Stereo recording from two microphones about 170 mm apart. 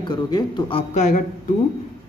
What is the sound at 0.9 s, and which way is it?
Speech, 45° left (ahead or behind).